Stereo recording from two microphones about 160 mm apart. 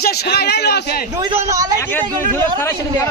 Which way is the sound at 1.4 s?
20° right (ahead or behind).